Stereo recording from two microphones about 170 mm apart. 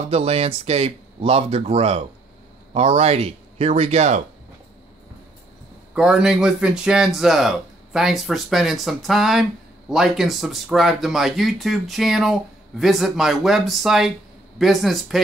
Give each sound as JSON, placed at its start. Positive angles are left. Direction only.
{"t": 0.1, "sound": "speech", "side_deg": -35}
{"t": 5.9, "sound": "speech", "side_deg": -5}